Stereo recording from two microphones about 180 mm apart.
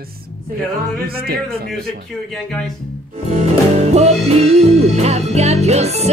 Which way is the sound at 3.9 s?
35° right (ahead or behind).